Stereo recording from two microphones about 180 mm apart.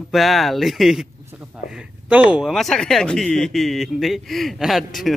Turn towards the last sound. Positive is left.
turn(degrees=0)  # may be behind; listen again after turning